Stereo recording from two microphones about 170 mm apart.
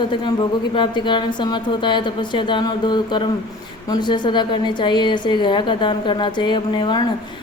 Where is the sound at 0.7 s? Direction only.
25° left (ahead or behind).